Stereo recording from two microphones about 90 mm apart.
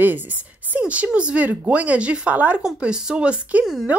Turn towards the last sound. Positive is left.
turn(degrees=-15)  # may be behind; listen again after turning